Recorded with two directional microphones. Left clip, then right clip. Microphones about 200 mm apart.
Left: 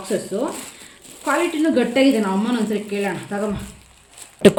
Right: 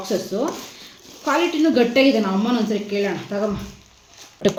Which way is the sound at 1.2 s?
5° left (ahead or behind).